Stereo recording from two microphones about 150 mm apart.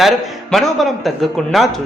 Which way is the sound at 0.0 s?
Centre (ahead or behind).